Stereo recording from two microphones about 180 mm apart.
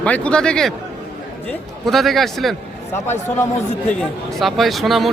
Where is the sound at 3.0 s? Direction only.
15° left (ahead or behind).